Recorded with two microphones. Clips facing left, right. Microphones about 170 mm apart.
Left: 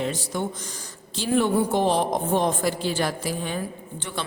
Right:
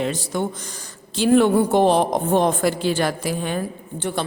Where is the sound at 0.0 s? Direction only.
70° right (ahead or behind).